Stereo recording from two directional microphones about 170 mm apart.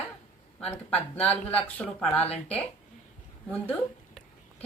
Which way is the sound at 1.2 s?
10° left (ahead or behind).